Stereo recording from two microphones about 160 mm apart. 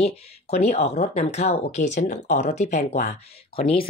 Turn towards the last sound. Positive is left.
turn(degrees=40)  # may be behind; listen again after turning